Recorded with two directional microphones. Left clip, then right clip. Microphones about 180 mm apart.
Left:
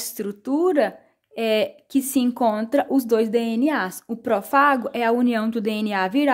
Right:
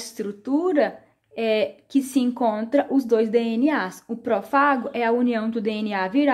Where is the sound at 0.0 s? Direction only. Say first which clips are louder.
Left 1 dB; 30° left (ahead or behind).